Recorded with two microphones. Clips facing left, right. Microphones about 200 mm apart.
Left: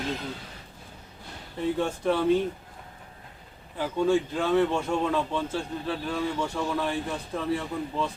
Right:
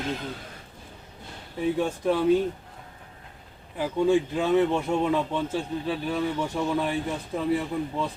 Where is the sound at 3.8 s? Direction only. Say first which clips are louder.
Right 2 dB; 15° right (ahead or behind).